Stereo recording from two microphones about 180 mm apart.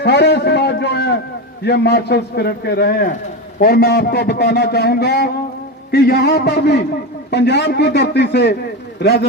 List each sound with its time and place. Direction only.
0.0 s a man's voice: 70° left (ahead or behind)